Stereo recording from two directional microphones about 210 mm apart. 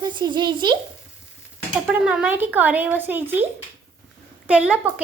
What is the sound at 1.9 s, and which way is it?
Speech, 5° right (ahead or behind).